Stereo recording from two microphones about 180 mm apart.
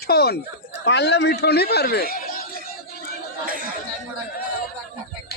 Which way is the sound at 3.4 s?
50° right (ahead or behind).